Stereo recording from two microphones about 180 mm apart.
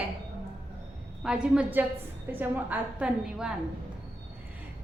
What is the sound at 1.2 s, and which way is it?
A woman's voice, 5° right (ahead or behind).